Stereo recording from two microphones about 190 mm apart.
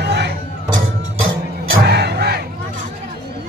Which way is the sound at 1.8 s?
60° right (ahead or behind).